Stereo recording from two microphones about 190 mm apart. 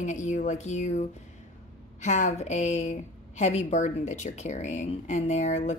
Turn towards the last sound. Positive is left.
turn(degrees=40)  # may be behind; listen again after turning